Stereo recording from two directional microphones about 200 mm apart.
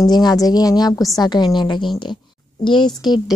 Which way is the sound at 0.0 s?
20° left (ahead or behind).